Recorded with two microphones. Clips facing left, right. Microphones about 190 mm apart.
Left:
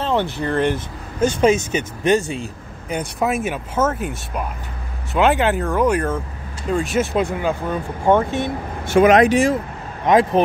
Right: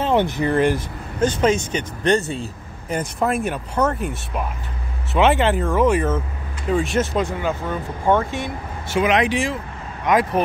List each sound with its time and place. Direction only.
0.0 s speech: 15° right (ahead or behind)
1.2 s speech: 10° left (ahead or behind)
7.0 s speech: 10° left (ahead or behind)
8.8 s speech: 50° left (ahead or behind)
10.0 s speech: 25° left (ahead or behind)